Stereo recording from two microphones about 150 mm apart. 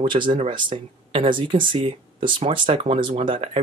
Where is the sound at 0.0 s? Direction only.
30° right (ahead or behind).